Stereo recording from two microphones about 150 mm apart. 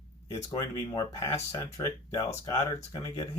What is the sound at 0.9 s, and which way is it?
Speech, 20° left (ahead or behind).